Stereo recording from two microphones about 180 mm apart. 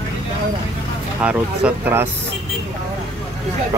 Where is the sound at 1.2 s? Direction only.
5° right (ahead or behind).